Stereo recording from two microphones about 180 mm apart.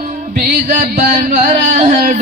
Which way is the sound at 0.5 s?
45° right (ahead or behind).